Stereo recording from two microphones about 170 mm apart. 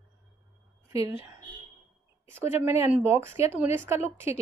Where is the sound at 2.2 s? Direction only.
15° right (ahead or behind).